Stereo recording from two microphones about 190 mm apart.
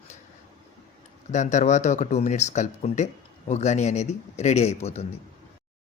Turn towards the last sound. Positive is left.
turn(degrees=35)  # may be behind; listen again after turning